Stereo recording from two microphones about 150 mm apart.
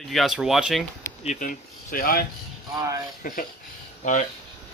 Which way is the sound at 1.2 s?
70° left (ahead or behind).